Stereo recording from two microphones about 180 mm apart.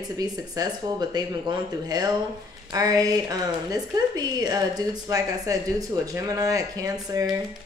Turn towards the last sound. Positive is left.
turn(degrees=-20)  # may be behind; listen again after turning